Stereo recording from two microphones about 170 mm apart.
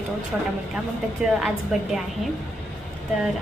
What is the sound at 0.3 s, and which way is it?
A woman's voice, 10° right (ahead or behind).